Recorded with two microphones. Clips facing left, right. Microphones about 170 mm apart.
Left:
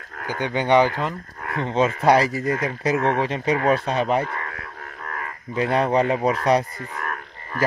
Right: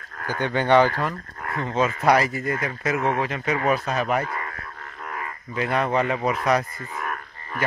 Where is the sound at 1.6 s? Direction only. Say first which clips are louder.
Left 3 dB; 30° left (ahead or behind).